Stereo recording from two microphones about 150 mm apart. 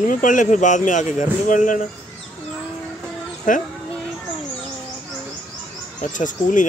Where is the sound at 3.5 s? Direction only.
60° left (ahead or behind).